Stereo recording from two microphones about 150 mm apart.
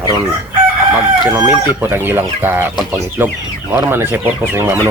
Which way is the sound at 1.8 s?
15° right (ahead or behind).